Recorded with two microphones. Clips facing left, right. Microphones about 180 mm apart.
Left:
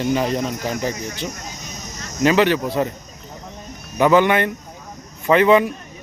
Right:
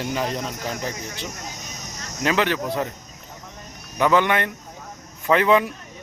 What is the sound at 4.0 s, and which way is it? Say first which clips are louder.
Speech: left 4 dB; 5° left (ahead or behind).